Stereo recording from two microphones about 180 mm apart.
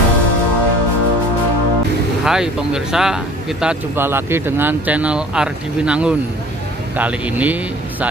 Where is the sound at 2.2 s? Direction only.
5° right (ahead or behind).